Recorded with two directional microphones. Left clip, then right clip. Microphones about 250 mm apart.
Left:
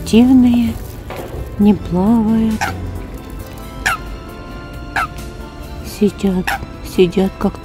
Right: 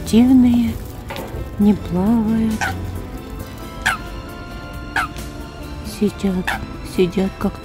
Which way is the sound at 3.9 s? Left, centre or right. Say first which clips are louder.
Left 2 dB; centre.